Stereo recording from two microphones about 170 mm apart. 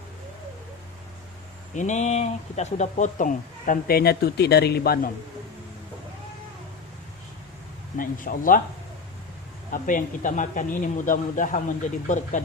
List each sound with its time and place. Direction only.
1.7 s speech: 45° left (ahead or behind); by 5.1 s 65° left (ahead or behind)
7.9 s speech: 55° left (ahead or behind)
9.7 s speech: 50° left (ahead or behind)